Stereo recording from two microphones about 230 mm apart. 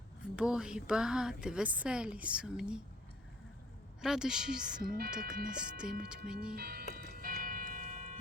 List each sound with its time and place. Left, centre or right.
0.3 s a woman's voice: centre
4.0 s a woman's voice: centre
4.8 s speech: right
5.3 s a woman's voice: centre
6.6 s speech: right
6.9 s a sound: right